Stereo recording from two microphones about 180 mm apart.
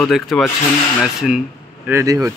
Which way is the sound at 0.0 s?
Centre (ahead or behind).